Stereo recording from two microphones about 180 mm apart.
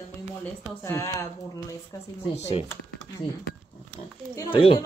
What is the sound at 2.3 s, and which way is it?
Speech, 35° left (ahead or behind).